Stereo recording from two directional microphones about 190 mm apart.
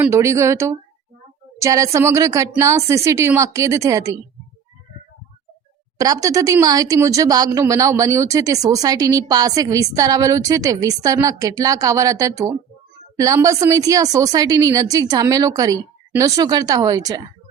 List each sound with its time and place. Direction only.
0.0 s speech: 15° right (ahead or behind)
6.0 s speech: 20° right (ahead or behind)